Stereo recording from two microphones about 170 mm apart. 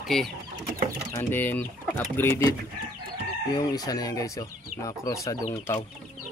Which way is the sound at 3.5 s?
20° left (ahead or behind).